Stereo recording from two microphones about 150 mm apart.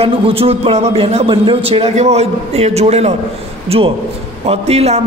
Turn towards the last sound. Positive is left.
turn(degrees=-45)  # may be behind; listen again after turning